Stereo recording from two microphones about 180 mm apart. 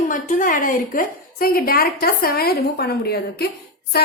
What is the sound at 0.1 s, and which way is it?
A woman's voice, 45° left (ahead or behind).